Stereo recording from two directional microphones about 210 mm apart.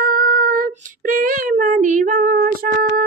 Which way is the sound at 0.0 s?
40° right (ahead or behind).